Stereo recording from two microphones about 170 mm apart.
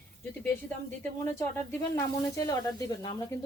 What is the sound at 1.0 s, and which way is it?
Speech, 15° left (ahead or behind).